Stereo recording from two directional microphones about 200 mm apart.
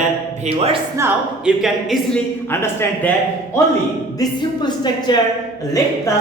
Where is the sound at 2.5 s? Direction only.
10° left (ahead or behind).